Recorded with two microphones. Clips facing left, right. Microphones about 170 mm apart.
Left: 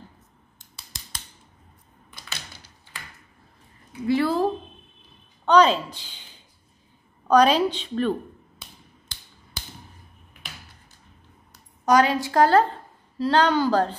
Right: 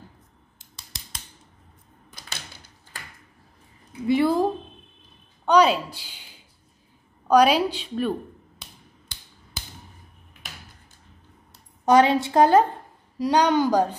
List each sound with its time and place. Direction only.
2.0 s typewriter: 40° right (ahead or behind)
4.1 s a woman's voice: 15° right (ahead or behind)
11.8 s a woman's voice: 25° right (ahead or behind)